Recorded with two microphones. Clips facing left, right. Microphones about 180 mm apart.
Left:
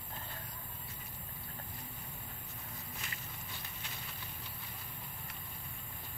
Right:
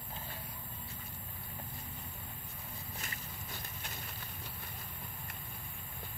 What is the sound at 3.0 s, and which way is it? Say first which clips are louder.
Walk: right 2 dB; 45° right (ahead or behind).